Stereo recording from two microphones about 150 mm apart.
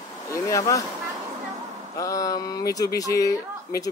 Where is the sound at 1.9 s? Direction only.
20° left (ahead or behind).